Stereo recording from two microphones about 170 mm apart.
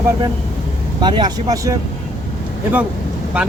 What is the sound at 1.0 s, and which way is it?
Speech, 25° right (ahead or behind).